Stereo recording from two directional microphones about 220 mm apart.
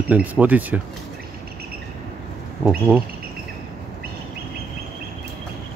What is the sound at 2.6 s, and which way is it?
Speech, 5° right (ahead or behind).